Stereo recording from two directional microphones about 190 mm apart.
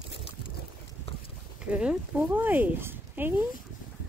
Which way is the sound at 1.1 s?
30° left (ahead or behind).